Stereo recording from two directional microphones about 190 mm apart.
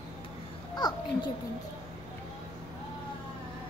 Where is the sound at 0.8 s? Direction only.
20° left (ahead or behind).